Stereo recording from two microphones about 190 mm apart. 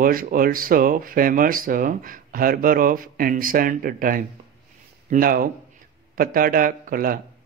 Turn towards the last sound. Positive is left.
turn(degrees=-50)  # may be behind; listen again after turning